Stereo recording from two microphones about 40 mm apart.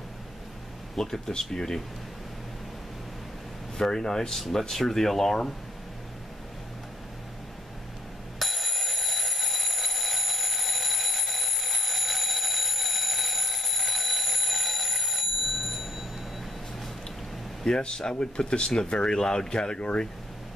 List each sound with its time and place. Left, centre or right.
0.9 s speech: centre
3.7 s speech: centre
8.4 s alarm clock: centre
17.6 s speech: centre